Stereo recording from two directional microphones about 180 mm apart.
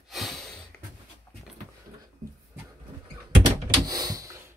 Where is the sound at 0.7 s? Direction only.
5° left (ahead or behind).